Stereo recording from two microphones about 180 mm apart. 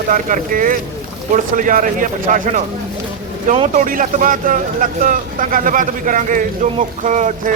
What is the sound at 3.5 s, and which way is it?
Speech, 35° right (ahead or behind).